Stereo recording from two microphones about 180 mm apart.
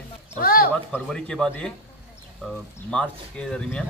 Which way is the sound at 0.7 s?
5° left (ahead or behind).